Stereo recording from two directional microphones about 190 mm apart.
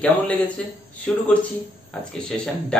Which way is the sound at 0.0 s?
10° left (ahead or behind).